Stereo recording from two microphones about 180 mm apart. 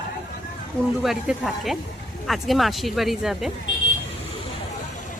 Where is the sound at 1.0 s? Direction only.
Centre (ahead or behind).